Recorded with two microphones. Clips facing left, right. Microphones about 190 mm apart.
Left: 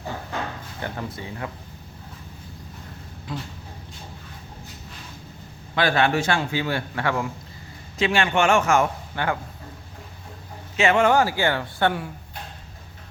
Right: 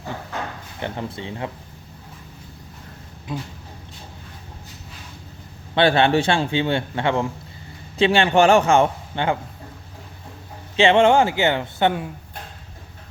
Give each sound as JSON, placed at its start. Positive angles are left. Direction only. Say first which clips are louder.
{"t": 0.8, "sound": "a man's voice", "louder": "right 3 dB", "side_deg": -25}
{"t": 3.3, "sound": "a man's voice", "louder": "right 3 dB", "side_deg": -20}
{"t": 5.7, "sound": "a man's voice", "louder": "right 4 dB", "side_deg": -30}
{"t": 10.8, "sound": "a man's voice", "louder": "right 4 dB", "side_deg": -30}